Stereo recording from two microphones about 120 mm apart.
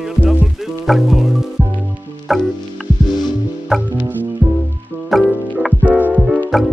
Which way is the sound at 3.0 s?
35° left (ahead or behind).